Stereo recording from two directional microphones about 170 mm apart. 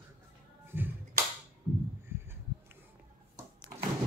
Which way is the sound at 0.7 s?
15° right (ahead or behind).